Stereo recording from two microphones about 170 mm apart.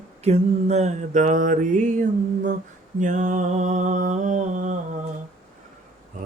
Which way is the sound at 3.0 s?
45° right (ahead or behind).